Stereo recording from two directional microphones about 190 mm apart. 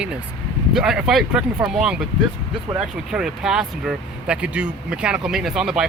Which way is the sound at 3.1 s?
5° right (ahead or behind).